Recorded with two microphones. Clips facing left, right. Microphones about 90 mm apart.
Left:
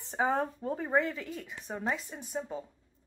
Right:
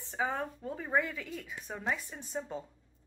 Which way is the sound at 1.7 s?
15° left (ahead or behind).